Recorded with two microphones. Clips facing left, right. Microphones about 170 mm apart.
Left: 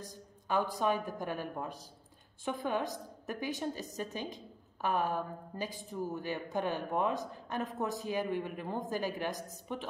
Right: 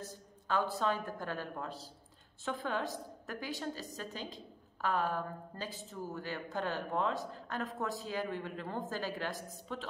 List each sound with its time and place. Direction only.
0.0 s a woman's voice: 15° left (ahead or behind)